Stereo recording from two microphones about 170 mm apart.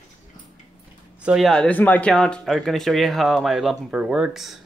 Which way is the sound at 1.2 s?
Centre (ahead or behind).